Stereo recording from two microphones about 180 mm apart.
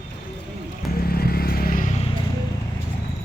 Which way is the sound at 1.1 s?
55° left (ahead or behind).